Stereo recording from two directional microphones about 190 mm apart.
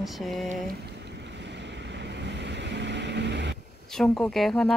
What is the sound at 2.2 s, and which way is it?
Vehicle, 65° right (ahead or behind).